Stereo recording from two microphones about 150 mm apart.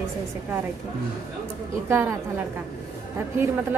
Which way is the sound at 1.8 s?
15° right (ahead or behind).